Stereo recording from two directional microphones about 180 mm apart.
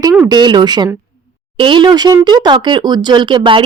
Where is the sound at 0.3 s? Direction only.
25° right (ahead or behind).